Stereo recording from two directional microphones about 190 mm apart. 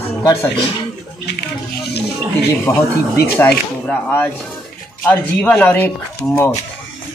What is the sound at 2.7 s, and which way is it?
Speech, 15° left (ahead or behind).